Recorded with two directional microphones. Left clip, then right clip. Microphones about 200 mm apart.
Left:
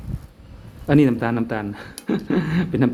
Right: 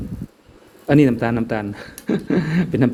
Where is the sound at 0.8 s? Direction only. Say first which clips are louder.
Right 2 dB; 20° right (ahead or behind).